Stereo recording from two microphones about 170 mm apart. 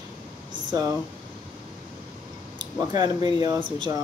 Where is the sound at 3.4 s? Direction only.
25° right (ahead or behind).